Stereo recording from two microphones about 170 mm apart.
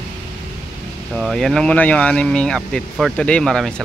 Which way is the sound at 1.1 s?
Centre (ahead or behind).